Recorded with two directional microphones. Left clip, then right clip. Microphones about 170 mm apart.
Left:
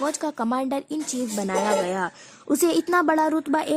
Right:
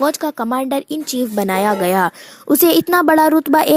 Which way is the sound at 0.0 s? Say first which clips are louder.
Right 8 dB; 30° right (ahead or behind).